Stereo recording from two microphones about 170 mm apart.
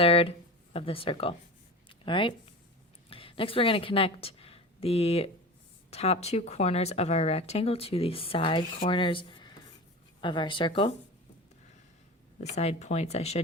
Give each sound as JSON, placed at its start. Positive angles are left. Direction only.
{"t": 0.0, "sound": "speech", "side_deg": 35}
{"t": 1.9, "sound": "a sound", "side_deg": 30}
{"t": 3.1, "sound": "a woman's voice", "side_deg": 30}
{"t": 12.4, "sound": "speech", "side_deg": 40}